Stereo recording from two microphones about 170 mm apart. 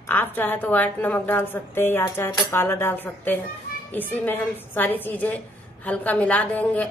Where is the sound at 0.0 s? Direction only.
10° left (ahead or behind).